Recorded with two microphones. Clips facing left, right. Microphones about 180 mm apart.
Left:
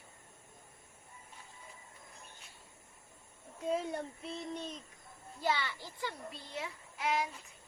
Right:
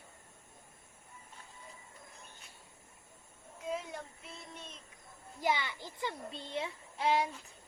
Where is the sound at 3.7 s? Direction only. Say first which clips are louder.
Left 6 dB; 30° left (ahead or behind).